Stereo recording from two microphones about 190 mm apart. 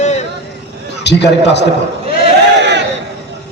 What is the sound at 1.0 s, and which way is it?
Speech, 65° left (ahead or behind).